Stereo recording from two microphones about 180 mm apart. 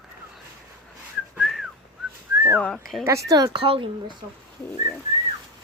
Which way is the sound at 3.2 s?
20° right (ahead or behind).